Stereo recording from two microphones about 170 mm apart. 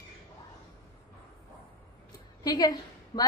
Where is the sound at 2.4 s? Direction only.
25° left (ahead or behind).